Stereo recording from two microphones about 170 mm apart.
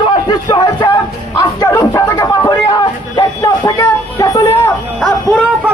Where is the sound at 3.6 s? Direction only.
20° left (ahead or behind).